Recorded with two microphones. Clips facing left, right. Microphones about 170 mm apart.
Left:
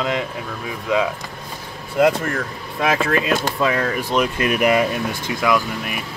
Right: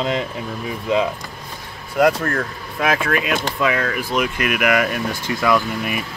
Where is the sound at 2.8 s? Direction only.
30° left (ahead or behind).